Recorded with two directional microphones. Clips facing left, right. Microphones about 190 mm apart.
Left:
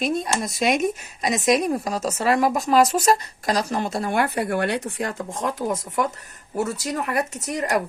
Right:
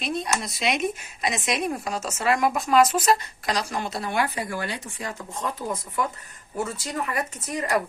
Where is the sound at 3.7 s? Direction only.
40° left (ahead or behind); by 5.8 s 60° left (ahead or behind).